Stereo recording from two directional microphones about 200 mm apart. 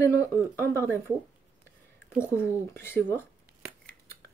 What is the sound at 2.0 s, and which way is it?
Speech, 15° left (ahead or behind).